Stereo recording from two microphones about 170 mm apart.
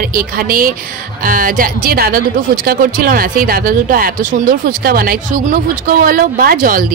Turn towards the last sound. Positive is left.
turn(degrees=-55)  # may be behind; listen again after turning